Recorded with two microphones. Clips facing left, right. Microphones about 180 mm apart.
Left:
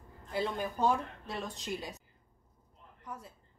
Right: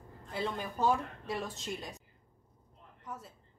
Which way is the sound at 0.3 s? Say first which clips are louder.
Left 2 dB; centre (ahead or behind).